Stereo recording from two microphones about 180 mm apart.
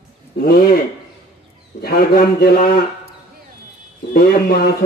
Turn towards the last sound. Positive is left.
turn(degrees=60)  # may be behind; listen again after turning